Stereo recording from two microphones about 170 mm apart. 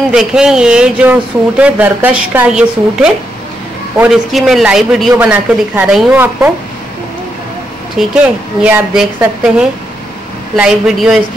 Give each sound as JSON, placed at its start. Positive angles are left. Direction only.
{"t": 0.1, "sound": "speech", "side_deg": -5}
{"t": 8.0, "sound": "speech", "side_deg": -5}
{"t": 10.5, "sound": "speech", "side_deg": -5}